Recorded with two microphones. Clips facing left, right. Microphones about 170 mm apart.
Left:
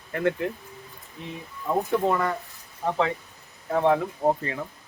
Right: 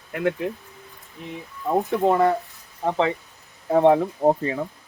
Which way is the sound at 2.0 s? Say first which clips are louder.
Right 6 dB; 25° right (ahead or behind).